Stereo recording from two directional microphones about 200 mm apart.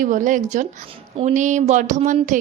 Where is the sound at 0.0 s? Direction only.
40° right (ahead or behind).